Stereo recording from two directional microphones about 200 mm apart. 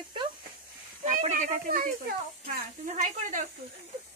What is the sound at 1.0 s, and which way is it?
Speech, 35° right (ahead or behind).